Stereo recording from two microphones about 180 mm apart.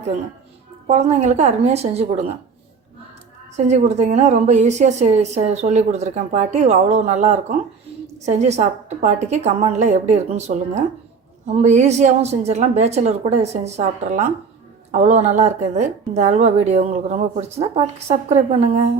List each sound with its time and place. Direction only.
0.9 s a woman's voice: 40° right (ahead or behind)
3.7 s a woman's voice: 40° right (ahead or behind)